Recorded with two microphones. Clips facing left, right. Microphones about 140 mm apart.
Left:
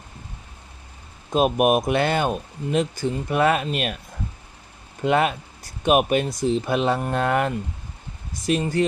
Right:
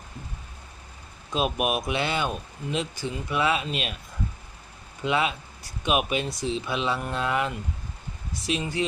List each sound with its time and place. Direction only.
1.3 s speech: 50° left (ahead or behind)
5.0 s speech: 50° left (ahead or behind)